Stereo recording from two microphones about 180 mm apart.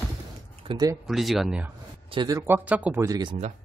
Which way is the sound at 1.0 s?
Centre (ahead or behind).